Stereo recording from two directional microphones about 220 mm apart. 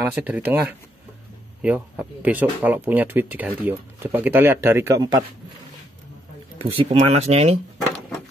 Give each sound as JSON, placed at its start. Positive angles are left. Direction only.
{"t": 0.0, "sound": "speech", "side_deg": -5}
{"t": 6.6, "sound": "speech", "side_deg": -25}